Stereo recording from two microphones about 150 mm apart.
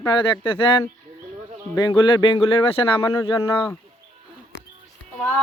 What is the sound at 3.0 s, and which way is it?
Speech, 20° left (ahead or behind).